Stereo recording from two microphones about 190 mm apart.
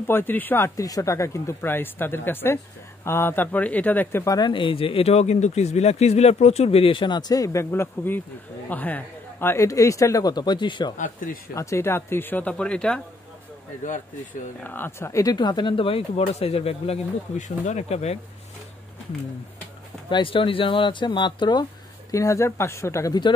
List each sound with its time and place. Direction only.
0.0 s speech: 10° left (ahead or behind)
11.0 s speech: 45° left (ahead or behind)
11.5 s speech: 15° left (ahead or behind)
13.8 s speech: 40° left (ahead or behind)
14.6 s speech: 10° left (ahead or behind); by 18.2 s 35° left (ahead or behind)
20.1 s speech: 25° left (ahead or behind)